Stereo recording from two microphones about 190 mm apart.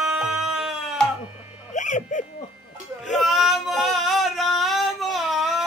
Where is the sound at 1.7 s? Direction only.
40° left (ahead or behind).